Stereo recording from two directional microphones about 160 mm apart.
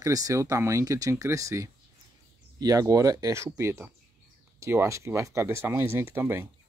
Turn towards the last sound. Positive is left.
turn(degrees=-15)  # may be behind; listen again after turning